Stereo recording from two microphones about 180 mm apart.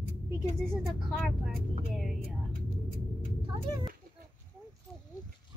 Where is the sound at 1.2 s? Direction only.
Centre (ahead or behind).